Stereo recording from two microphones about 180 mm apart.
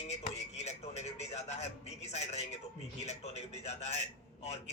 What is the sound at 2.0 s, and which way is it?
Speech, 40° left (ahead or behind).